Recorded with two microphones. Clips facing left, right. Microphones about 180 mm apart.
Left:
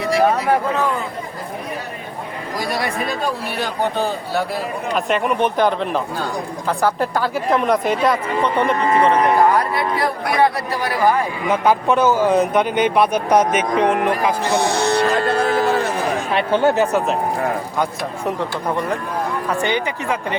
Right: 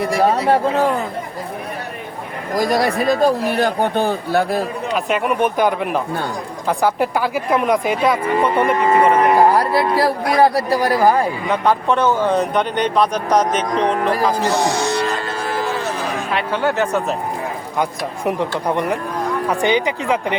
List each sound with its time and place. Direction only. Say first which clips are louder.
0.3 s speech: right 3 dB; 35° right (ahead or behind)
2.6 s a man's voice: right 6 dB; 40° right (ahead or behind)
4.9 s speech: even; 5° right (ahead or behind)
9.3 s a sound: right 2 dB; 35° right (ahead or behind)
10.0 s speech: right 2 dB; 35° right (ahead or behind)
11.4 s speech: left 4 dB; 5° left (ahead or behind)
14.8 s music: left 3 dB; 60° left (ahead or behind)
15.3 s cattle: left 5 dB; 60° left (ahead or behind)
16.7 s speech: left 2 dB; 5° left (ahead or behind)
19.5 s speech: right 5 dB; 15° right (ahead or behind)